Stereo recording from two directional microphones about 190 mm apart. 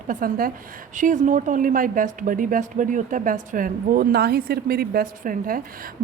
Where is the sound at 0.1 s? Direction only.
45° right (ahead or behind).